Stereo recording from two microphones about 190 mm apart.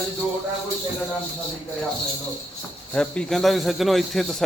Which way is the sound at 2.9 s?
5° left (ahead or behind).